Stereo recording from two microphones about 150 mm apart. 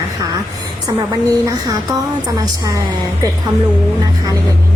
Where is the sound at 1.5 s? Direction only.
25° right (ahead or behind).